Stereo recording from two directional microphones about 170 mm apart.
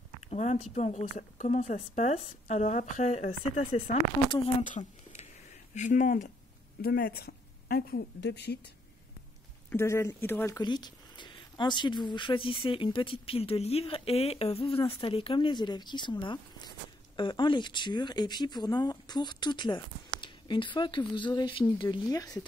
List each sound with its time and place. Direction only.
0.2 s a woman's voice: 40° left (ahead or behind)
4.3 s speech: 30° left (ahead or behind)
4.6 s a sound: 45° left (ahead or behind)
5.8 s a woman's voice: 45° left (ahead or behind)
6.8 s a woman's voice: 65° left (ahead or behind); by 8.5 s 85° left
9.7 s speech: 15° left (ahead or behind)